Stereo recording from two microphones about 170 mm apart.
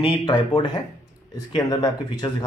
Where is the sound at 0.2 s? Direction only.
25° left (ahead or behind).